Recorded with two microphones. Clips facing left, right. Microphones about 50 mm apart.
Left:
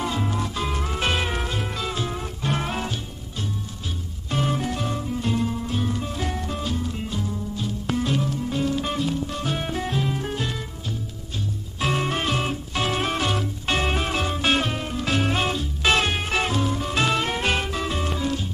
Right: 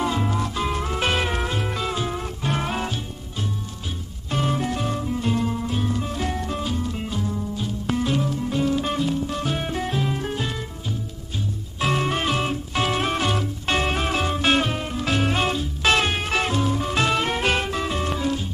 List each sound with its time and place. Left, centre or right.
0.0 s music: centre
4.3 s music: centre
11.8 s music: centre